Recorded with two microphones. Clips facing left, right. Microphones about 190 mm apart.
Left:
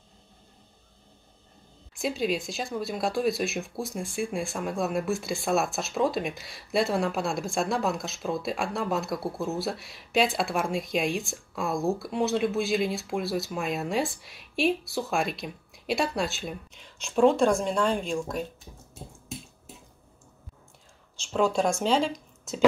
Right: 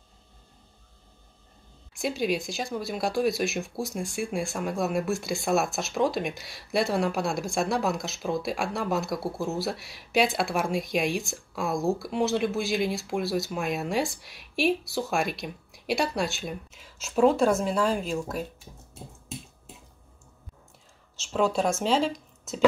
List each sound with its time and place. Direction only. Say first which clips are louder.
2.0 s speech: right 1 dB; centre (ahead or behind)
21.2 s speech: even; centre (ahead or behind)